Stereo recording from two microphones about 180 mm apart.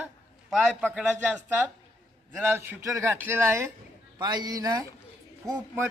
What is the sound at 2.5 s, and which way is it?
A man's voice, 15° right (ahead or behind).